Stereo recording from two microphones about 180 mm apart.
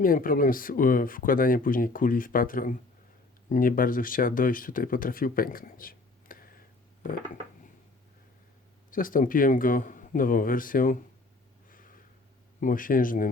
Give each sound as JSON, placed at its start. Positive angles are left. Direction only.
{"t": 0.0, "sound": "speech", "side_deg": 50}
{"t": 8.9, "sound": "speech", "side_deg": 50}
{"t": 11.7, "sound": "a sound", "side_deg": 50}
{"t": 12.5, "sound": "speech", "side_deg": 50}